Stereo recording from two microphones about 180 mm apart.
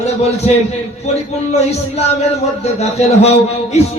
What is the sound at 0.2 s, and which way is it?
Speech, 35° left (ahead or behind).